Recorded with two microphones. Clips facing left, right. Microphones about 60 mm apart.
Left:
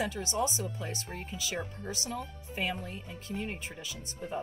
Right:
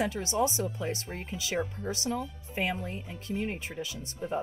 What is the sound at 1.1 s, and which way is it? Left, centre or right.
Speech, right.